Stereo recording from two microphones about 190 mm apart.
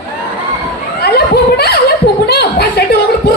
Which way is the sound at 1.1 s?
55° left (ahead or behind).